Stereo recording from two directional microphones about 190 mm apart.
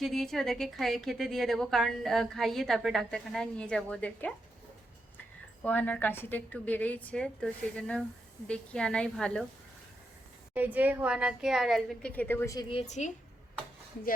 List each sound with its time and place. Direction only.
0.0 s a woman's voice: centre (ahead or behind)
5.6 s a woman's voice: 10° left (ahead or behind)
10.5 s a woman's voice: 10° right (ahead or behind); by 12.6 s 15° left (ahead or behind)
12.7 s a woman's voice: 35° left (ahead or behind)